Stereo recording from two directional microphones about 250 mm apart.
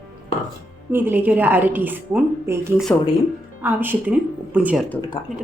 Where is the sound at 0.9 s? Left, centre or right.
Centre.